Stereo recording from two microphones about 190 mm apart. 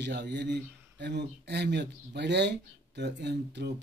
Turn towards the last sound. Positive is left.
turn(degrees=-65)  # may be behind; listen again after turning